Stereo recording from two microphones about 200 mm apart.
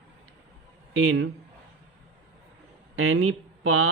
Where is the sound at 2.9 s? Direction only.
90° right.